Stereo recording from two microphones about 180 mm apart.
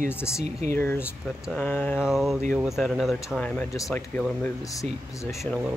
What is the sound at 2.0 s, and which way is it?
Speech, centre (ahead or behind).